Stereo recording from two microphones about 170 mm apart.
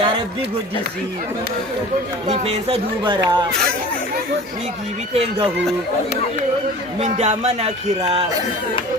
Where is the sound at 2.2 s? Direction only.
40° right (ahead or behind).